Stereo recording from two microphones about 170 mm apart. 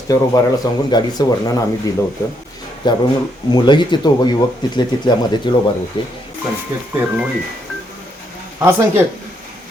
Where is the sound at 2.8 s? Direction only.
25° left (ahead or behind).